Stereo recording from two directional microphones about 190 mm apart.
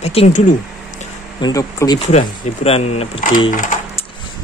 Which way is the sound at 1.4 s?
20° left (ahead or behind).